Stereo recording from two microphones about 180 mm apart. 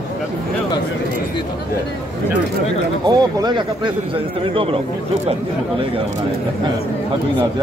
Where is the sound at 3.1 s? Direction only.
20° right (ahead or behind).